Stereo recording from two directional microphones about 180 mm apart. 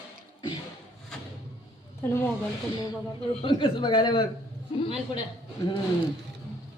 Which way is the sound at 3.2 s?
30° left (ahead or behind).